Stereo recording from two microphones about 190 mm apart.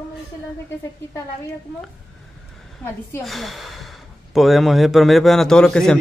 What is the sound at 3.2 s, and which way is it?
A man's voice, centre (ahead or behind).